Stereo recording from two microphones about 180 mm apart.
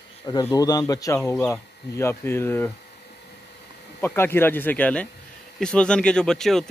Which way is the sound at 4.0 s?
10° left (ahead or behind).